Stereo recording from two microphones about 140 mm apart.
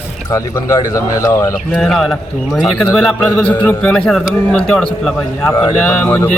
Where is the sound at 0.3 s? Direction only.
20° left (ahead or behind).